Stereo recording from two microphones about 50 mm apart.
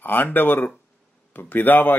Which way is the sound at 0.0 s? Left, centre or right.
Left.